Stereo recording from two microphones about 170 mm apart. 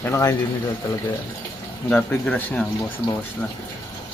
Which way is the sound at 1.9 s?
10° left (ahead or behind).